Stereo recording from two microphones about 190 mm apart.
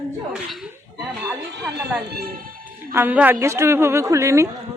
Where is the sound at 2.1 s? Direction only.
55° right (ahead or behind).